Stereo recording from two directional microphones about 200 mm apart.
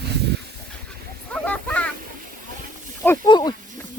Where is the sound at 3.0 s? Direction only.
15° left (ahead or behind).